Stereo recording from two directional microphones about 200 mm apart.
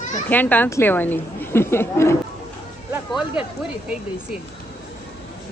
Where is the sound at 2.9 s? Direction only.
5° right (ahead or behind).